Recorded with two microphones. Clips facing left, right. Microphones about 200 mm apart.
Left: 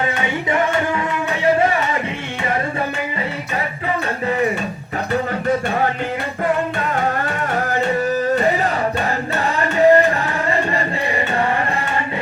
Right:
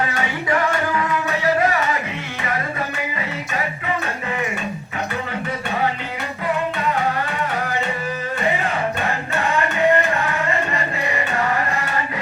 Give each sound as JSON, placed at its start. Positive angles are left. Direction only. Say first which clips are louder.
{"t": 0.5, "sound": "music", "louder": "left 1 dB", "side_deg": 25}
{"t": 8.4, "sound": "music", "louder": "left 4 dB", "side_deg": 40}